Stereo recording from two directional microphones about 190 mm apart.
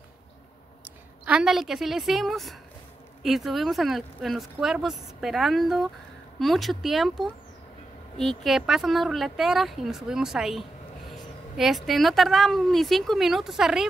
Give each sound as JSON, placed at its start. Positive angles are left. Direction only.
{"t": 0.8, "sound": "a woman's voice", "side_deg": -5}